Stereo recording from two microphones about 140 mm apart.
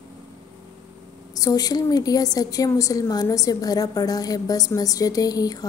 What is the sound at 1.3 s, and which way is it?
A woman's voice, 25° left (ahead or behind).